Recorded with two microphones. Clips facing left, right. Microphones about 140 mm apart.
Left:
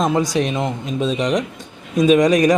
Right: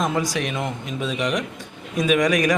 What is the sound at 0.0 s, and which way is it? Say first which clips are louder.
Speech: left 5 dB; 30° left (ahead or behind).